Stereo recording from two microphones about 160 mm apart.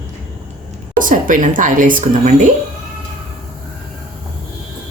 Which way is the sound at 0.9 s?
55° right (ahead or behind).